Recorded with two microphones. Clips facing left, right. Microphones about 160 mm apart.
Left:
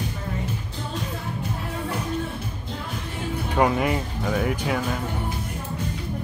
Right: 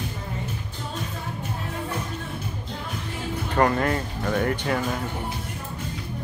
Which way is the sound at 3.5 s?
10° left (ahead or behind).